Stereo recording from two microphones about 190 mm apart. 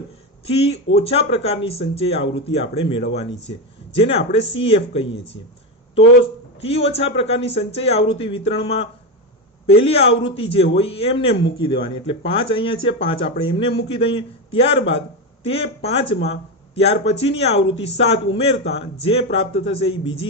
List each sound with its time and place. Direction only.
0.4 s speech: 35° left (ahead or behind)
6.6 s speech: 30° left (ahead or behind)